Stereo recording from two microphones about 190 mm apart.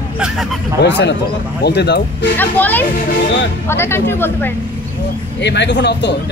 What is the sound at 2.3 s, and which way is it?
Speech, 10° left (ahead or behind).